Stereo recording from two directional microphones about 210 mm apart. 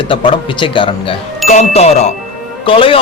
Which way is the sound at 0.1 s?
25° left (ahead or behind).